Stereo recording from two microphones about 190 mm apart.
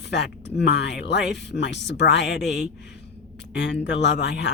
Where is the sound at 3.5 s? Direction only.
60° left (ahead or behind).